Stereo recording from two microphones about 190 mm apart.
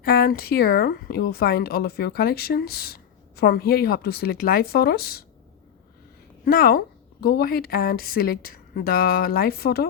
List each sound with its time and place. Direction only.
0.0 s speech: 55° left (ahead or behind)
6.4 s speech: 50° left (ahead or behind)